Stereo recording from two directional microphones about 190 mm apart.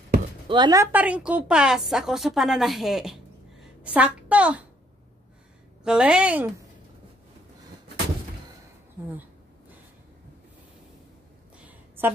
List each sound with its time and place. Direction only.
0.5 s speech: 20° right (ahead or behind)
0.9 s a woman's voice: 5° right (ahead or behind)
5.9 s a woman's voice: 5° right (ahead or behind)
11.5 s a sound: 5° right (ahead or behind)